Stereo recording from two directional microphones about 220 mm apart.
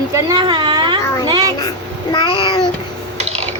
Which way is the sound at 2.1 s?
20° left (ahead or behind).